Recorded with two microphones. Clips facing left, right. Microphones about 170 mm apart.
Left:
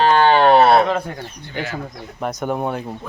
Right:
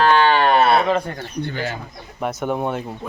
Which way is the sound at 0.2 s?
35° left (ahead or behind).